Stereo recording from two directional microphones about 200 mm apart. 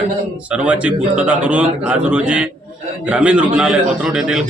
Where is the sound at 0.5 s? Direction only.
5° right (ahead or behind).